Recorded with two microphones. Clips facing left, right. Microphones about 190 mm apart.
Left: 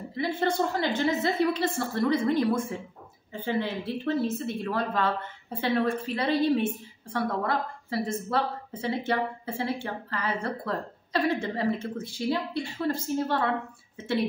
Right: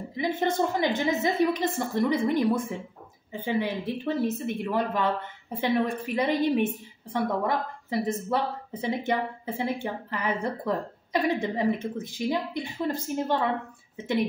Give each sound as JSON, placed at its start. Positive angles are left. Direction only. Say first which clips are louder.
{"t": 0.1, "sound": "a woman's voice", "louder": "even", "side_deg": -15}